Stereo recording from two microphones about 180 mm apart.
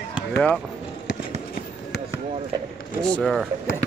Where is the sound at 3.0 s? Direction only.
5° left (ahead or behind).